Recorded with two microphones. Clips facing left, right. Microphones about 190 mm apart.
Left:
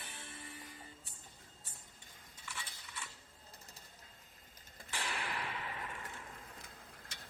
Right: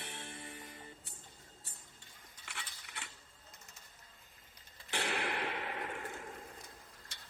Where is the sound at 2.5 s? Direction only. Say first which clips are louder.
Left 1 dB; 65° right (ahead or behind).